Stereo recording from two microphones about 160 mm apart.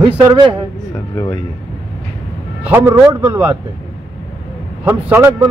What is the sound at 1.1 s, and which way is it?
Speech, 25° left (ahead or behind).